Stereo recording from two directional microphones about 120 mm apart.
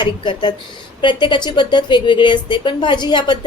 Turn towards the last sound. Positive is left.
turn(degrees=40)  # may be behind; listen again after turning